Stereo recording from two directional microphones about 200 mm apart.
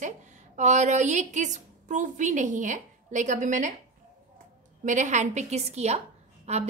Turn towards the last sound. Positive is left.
turn(degrees=-35)  # may be behind; listen again after turning